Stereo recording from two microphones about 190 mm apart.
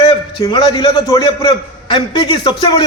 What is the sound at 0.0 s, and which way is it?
A man's voice, 30° left (ahead or behind).